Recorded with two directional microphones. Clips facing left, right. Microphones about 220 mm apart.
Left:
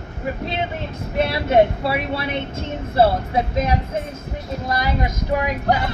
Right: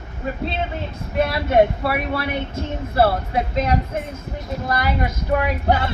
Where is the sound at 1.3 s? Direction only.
25° left (ahead or behind).